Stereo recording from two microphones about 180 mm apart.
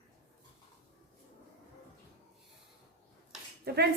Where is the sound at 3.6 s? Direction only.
65° right (ahead or behind).